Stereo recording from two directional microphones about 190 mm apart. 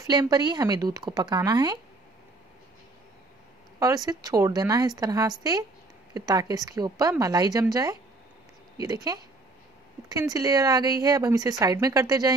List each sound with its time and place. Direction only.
0.0 s speech: 20° right (ahead or behind)
3.8 s speech: 20° right (ahead or behind)
10.3 s speech: 20° right (ahead or behind)